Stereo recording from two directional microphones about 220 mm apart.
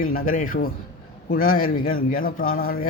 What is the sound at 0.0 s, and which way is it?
Speech, 40° left (ahead or behind).